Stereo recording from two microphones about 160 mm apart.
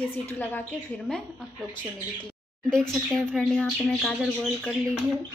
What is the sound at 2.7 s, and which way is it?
Speech, 5° left (ahead or behind).